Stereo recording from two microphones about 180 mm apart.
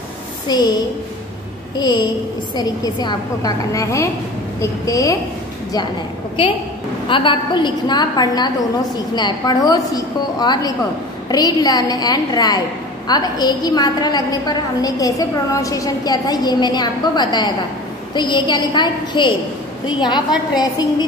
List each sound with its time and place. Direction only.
0.5 s a woman's voice: 20° left (ahead or behind)
1.8 s a woman's voice: 25° left (ahead or behind)
6.4 s a woman's voice: 25° left (ahead or behind)